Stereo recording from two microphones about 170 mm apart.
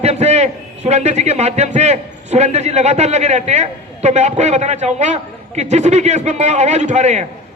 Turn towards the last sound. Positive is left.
turn(degrees=-40)  # may be behind; listen again after turning